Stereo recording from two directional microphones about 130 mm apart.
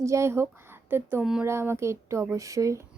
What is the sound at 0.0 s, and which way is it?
Speech, 20° right (ahead or behind).